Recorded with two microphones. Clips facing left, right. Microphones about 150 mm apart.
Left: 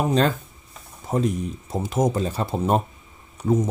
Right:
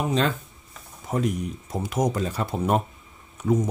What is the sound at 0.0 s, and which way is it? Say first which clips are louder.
Speech: left 3 dB; 40° left (ahead or behind).